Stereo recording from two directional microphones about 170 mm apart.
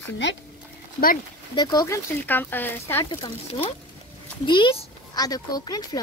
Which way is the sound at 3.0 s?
30° left (ahead or behind).